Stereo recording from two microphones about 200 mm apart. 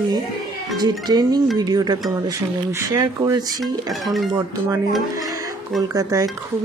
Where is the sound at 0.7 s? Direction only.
20° right (ahead or behind).